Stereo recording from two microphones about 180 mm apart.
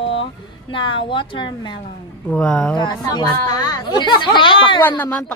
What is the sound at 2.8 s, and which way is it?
Speech, 25° left (ahead or behind).